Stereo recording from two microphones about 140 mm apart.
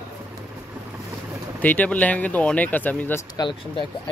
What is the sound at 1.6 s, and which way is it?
Speech, 10° left (ahead or behind).